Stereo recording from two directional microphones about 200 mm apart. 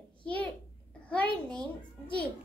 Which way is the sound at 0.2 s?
5° left (ahead or behind).